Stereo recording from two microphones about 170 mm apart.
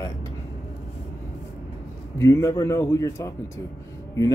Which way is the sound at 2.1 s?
15° left (ahead or behind).